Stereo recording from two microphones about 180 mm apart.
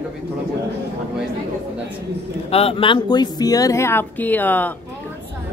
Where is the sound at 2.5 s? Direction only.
30° left (ahead or behind); by 4.7 s 10° left (ahead or behind).